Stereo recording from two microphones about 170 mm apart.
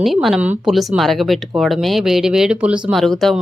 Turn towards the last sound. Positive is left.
turn(degrees=0)  # may be behind; listen again after turning